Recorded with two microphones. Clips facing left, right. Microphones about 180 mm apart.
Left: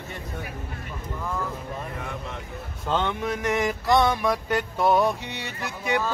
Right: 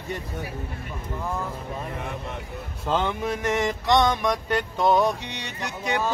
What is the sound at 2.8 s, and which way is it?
Mantra, 5° right (ahead or behind).